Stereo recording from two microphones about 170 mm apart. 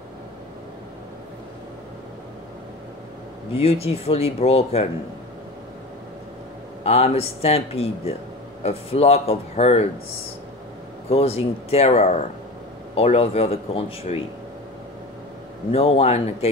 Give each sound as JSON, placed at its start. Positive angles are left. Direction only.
{"t": 3.5, "sound": "speech", "side_deg": 35}
{"t": 6.8, "sound": "speech", "side_deg": 35}
{"t": 11.1, "sound": "speech", "side_deg": 35}
{"t": 15.7, "sound": "speech", "side_deg": 35}